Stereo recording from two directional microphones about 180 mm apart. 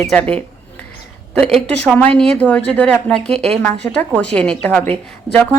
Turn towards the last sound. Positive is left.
turn(degrees=10)  # may be behind; listen again after turning